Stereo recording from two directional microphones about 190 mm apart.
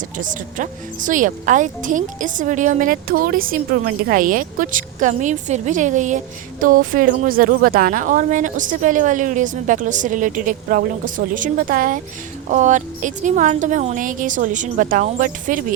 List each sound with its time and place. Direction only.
0.2 s a woman's voice: 45° right (ahead or behind)